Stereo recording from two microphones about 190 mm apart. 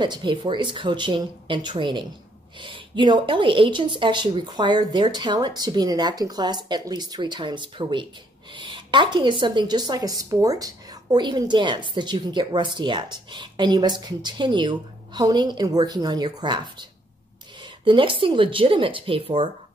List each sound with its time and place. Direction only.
0.0 s a woman's voice: 25° right (ahead or behind)
17.8 s a woman's voice: 25° right (ahead or behind)